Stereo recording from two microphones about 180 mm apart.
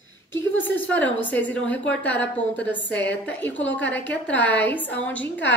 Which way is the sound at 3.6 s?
90° left.